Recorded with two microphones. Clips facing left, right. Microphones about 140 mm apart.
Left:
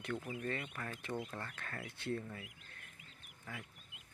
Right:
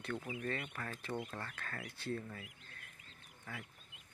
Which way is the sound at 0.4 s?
25° left (ahead or behind).